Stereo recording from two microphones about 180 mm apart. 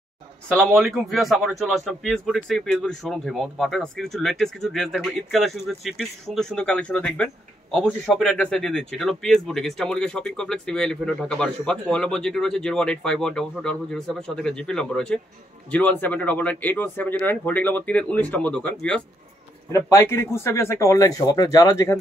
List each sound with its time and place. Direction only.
0.7 s speech: centre (ahead or behind)
19.7 s speech: 15° left (ahead or behind)